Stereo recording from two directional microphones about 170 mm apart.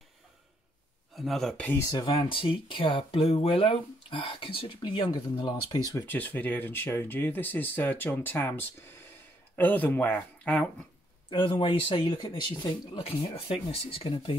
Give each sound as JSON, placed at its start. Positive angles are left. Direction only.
{"t": 1.1, "sound": "speech", "side_deg": 0}
{"t": 1.8, "sound": "speech", "side_deg": 25}
{"t": 6.0, "sound": "speech", "side_deg": 10}
{"t": 11.2, "sound": "speech", "side_deg": 25}